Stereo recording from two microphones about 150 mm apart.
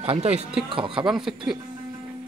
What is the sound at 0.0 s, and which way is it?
Speech, 40° right (ahead or behind).